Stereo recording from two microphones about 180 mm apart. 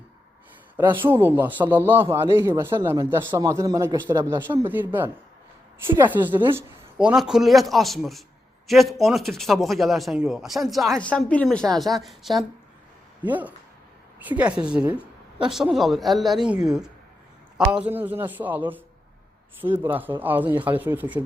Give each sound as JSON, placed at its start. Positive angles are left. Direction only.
{"t": 1.0, "sound": "speech", "side_deg": -10}